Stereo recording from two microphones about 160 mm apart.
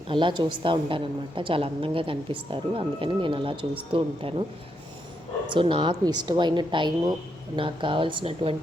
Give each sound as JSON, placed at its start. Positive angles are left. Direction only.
{"t": 0.1, "sound": "a woman's voice", "side_deg": -30}
{"t": 5.5, "sound": "a woman's voice", "side_deg": -30}